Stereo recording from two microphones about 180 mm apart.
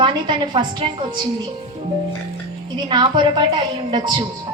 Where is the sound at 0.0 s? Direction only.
25° right (ahead or behind).